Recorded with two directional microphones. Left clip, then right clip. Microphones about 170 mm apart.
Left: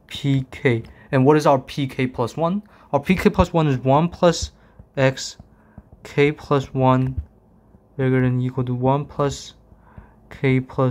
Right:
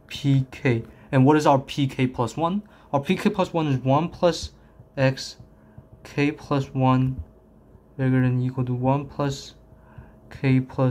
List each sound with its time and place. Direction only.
0.1 s speech: 25° left (ahead or behind)